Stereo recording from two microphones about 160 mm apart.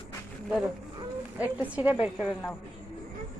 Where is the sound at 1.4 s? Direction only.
10° right (ahead or behind).